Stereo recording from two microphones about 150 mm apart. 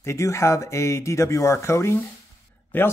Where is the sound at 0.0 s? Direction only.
20° left (ahead or behind).